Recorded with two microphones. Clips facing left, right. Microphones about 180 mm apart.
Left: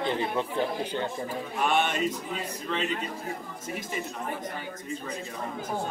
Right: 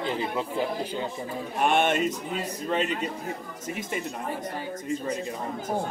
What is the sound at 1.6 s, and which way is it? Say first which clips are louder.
Speech: right 3 dB; 50° right (ahead or behind).